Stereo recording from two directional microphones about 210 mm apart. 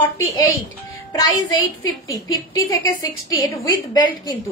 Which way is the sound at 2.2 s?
15° left (ahead or behind).